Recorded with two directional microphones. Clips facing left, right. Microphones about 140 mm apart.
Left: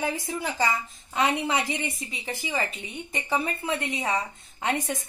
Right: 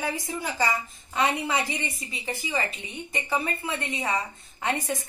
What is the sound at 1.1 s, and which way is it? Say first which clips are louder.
Speech: left 1 dB; 15° left (ahead or behind).